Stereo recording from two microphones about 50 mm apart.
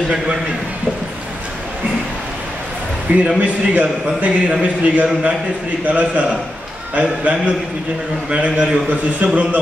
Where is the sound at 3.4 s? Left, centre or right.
Right.